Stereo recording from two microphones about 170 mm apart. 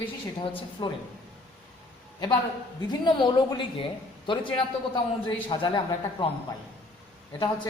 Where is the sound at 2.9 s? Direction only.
25° left (ahead or behind).